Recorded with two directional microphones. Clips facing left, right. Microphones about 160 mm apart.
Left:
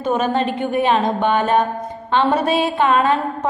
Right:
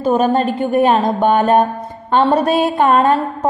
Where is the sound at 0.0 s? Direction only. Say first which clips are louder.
Right 4 dB; 40° right (ahead or behind).